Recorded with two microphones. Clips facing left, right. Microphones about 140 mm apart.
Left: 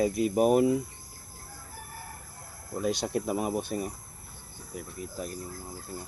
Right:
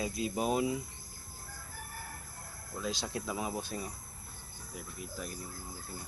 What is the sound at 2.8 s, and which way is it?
Speech, 60° left (ahead or behind).